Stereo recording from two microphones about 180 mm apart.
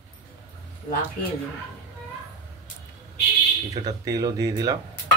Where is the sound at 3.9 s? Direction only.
20° right (ahead or behind).